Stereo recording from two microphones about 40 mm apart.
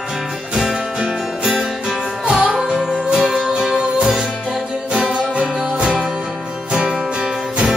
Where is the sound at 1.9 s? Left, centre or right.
Centre.